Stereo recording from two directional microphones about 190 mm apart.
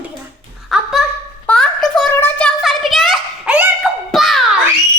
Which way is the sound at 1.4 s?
5° left (ahead or behind).